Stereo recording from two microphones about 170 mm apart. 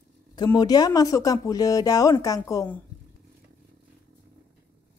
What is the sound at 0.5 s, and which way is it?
Speech, 25° left (ahead or behind).